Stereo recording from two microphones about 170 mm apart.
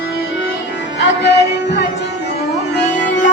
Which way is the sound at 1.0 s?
85° left.